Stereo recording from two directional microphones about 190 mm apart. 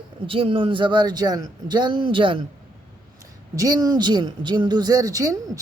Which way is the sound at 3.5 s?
20° right (ahead or behind).